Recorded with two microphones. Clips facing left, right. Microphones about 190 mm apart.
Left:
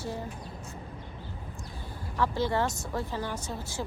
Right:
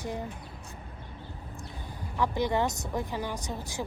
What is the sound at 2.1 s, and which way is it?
Speech, 15° right (ahead or behind).